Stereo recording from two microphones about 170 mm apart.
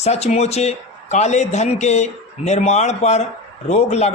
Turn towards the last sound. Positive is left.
turn(degrees=40)  # may be behind; listen again after turning